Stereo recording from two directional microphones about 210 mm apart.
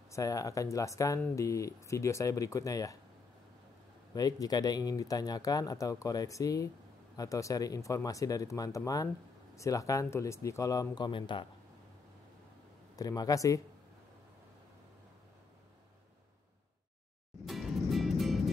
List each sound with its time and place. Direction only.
0.1 s speech: 15° left (ahead or behind)
4.1 s speech: 15° left (ahead or behind)
12.9 s speech: 15° left (ahead or behind)
17.5 s music: centre (ahead or behind)